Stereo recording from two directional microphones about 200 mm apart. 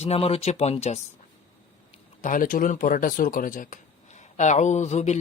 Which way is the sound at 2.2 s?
40° left (ahead or behind).